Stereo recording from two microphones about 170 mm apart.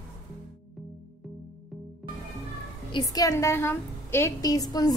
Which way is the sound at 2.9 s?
20° left (ahead or behind).